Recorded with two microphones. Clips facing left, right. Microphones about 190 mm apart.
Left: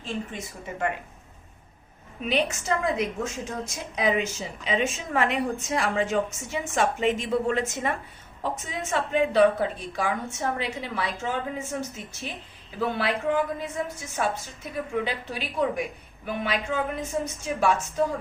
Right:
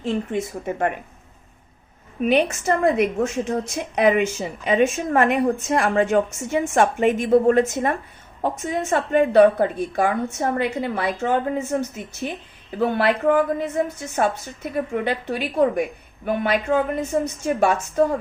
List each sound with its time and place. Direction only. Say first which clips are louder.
0.0 s a woman's voice: right 9 dB; 60° right (ahead or behind)
2.2 s a woman's voice: right 7 dB; 55° right (ahead or behind)
12.8 s a woman's voice: right 7 dB; 60° right (ahead or behind)